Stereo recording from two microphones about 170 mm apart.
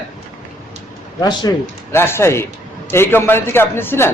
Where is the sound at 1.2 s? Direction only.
25° left (ahead or behind).